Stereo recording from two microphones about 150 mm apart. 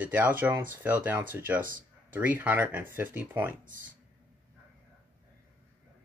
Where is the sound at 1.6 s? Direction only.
65° right (ahead or behind).